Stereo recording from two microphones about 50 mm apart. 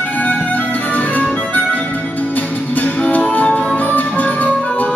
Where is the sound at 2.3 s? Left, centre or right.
Left.